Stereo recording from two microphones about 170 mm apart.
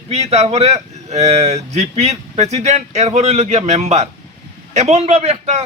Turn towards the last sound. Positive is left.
turn(degrees=-40)  # may be behind; listen again after turning